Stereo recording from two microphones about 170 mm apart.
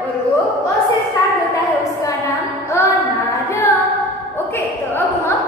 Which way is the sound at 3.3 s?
15° left (ahead or behind).